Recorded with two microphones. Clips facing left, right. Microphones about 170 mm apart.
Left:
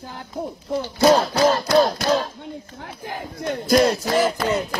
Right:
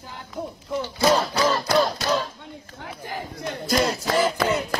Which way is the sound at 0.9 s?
50° left (ahead or behind).